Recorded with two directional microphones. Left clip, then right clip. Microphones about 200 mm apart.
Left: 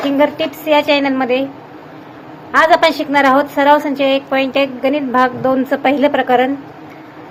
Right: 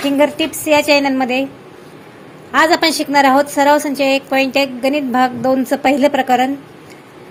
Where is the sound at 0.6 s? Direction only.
45° right (ahead or behind).